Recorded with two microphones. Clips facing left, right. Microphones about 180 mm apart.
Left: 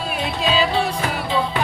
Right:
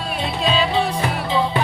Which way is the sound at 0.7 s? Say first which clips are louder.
Right 1 dB; 20° right (ahead or behind).